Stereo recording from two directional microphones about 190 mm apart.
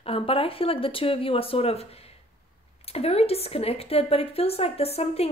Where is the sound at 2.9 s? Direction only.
30° left (ahead or behind).